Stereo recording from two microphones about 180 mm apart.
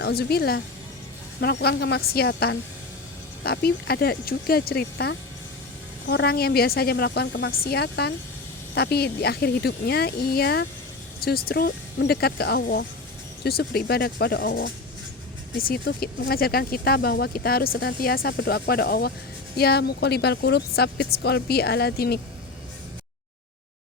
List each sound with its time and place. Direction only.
0.0 s speech: 60° left (ahead or behind)
15.5 s speech: 55° left (ahead or behind)